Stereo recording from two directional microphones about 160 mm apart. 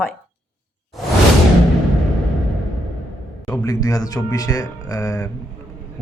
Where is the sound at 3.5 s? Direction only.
20° left (ahead or behind).